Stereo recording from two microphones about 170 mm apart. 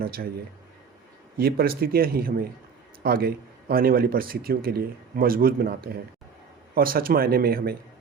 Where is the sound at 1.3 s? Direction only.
60° right (ahead or behind).